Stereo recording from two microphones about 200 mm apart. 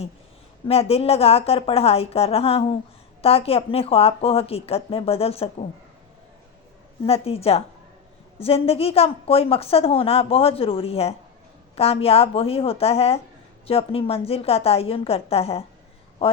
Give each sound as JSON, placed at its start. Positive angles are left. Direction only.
{"t": 0.7, "sound": "a woman's voice", "side_deg": 30}
{"t": 7.0, "sound": "a woman's voice", "side_deg": 30}